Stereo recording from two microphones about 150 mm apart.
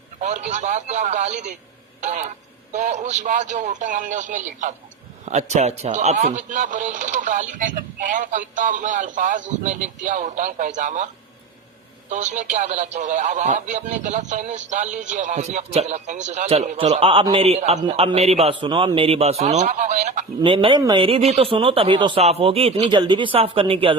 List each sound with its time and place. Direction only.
0.2 s a man's voice: 50° right (ahead or behind)
20.4 s a man's voice: 35° right (ahead or behind)